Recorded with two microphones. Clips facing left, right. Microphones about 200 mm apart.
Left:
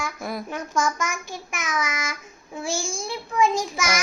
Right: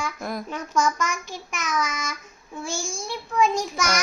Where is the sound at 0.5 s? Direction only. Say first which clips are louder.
Right 2 dB; 50° left (ahead or behind).